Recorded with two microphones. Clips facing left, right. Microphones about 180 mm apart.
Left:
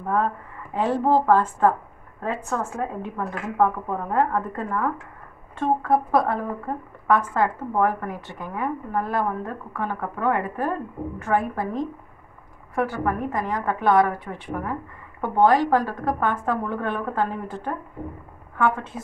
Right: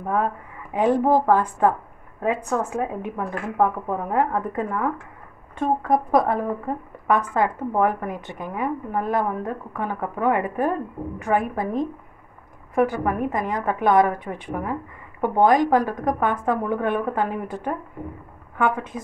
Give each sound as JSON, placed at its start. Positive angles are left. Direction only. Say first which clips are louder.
{"t": 0.7, "sound": "a woman's voice", "louder": "right 2 dB", "side_deg": -15}
{"t": 5.8, "sound": "a woman's voice", "louder": "right 2 dB", "side_deg": -15}